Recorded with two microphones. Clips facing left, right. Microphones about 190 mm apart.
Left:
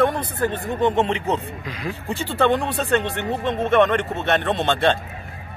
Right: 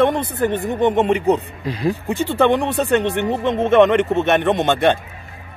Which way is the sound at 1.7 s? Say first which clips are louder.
Right 10 dB; 30° right (ahead or behind).